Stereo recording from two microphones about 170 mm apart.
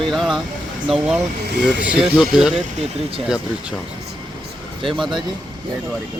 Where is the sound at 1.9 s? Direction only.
5° right (ahead or behind).